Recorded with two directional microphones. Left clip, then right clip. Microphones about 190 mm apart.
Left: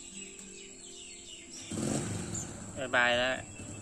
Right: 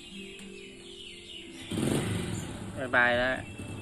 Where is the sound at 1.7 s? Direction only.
90° left.